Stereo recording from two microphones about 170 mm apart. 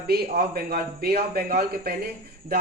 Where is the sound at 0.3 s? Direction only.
65° right (ahead or behind).